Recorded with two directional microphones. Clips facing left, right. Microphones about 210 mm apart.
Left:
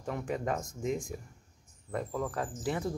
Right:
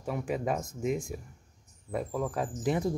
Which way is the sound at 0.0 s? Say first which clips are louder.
Right 2 dB; 5° right (ahead or behind).